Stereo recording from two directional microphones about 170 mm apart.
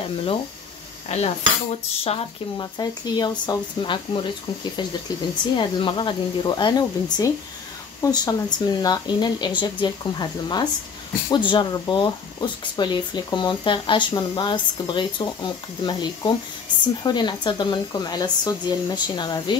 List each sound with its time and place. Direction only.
1.0 s speech: 40° left (ahead or behind)
5.6 s speech: 30° left (ahead or behind)